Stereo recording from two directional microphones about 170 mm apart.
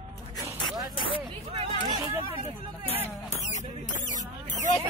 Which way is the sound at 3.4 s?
45° left (ahead or behind).